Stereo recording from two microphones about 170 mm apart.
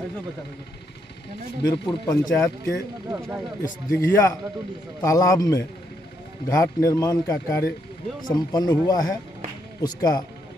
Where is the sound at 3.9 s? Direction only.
15° left (ahead or behind).